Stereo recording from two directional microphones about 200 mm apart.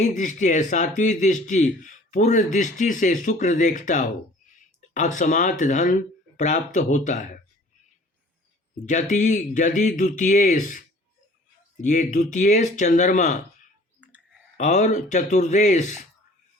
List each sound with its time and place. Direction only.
0.0 s speech: 40° left (ahead or behind)
8.9 s speech: 35° left (ahead or behind)
14.6 s speech: 35° left (ahead or behind)